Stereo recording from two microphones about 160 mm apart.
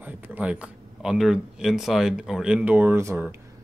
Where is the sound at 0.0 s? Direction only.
10° right (ahead or behind).